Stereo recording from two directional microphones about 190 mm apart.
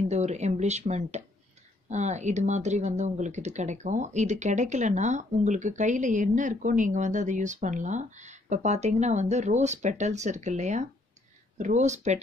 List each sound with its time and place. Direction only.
0.1 s speech: 35° right (ahead or behind)